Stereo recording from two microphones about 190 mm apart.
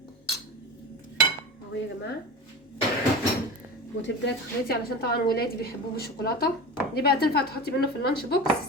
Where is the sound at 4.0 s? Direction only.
60° left (ahead or behind).